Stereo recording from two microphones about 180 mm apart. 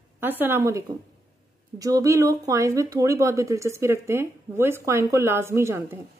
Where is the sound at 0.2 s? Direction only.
10° right (ahead or behind).